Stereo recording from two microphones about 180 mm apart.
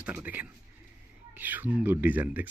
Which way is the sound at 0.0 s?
10° right (ahead or behind).